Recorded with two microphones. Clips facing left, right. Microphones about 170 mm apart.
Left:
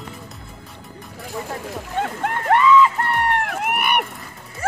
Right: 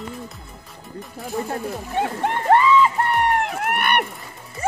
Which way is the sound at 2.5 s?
30° right (ahead or behind).